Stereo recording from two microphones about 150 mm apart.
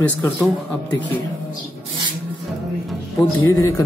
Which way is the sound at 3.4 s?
20° left (ahead or behind).